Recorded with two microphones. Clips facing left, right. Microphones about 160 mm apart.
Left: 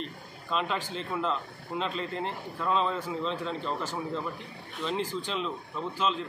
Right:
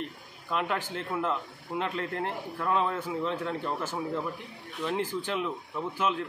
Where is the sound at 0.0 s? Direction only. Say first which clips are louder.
Even; 15° right (ahead or behind).